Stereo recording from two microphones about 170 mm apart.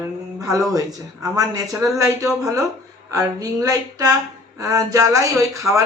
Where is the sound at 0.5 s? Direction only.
20° right (ahead or behind).